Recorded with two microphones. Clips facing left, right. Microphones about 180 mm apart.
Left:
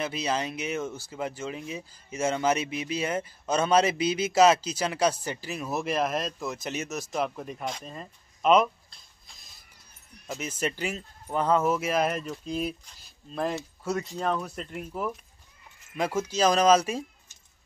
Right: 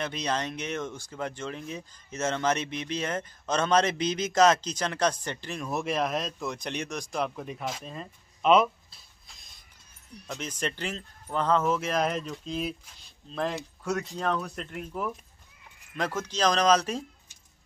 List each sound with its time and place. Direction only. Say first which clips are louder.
0.0 s speech: left 1 dB; 5° left (ahead or behind)